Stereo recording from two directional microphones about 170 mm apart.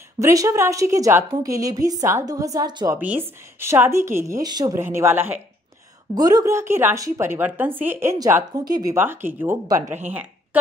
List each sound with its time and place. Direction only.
0.2 s a woman's voice: 20° right (ahead or behind)
3.5 s a woman's voice: 15° right (ahead or behind)